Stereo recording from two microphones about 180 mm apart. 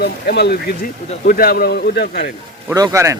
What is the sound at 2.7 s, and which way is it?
Speech, 20° right (ahead or behind).